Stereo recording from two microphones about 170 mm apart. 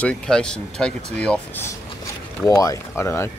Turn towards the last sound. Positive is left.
turn(degrees=15)  # may be behind; listen again after turning